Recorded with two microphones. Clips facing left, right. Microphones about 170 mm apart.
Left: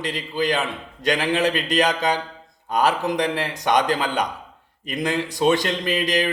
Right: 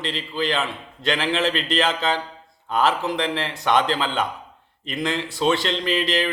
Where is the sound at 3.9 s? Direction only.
40° left (ahead or behind).